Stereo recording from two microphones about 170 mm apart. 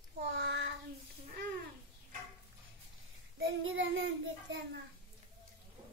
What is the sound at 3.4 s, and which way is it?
Child singing, 90° right.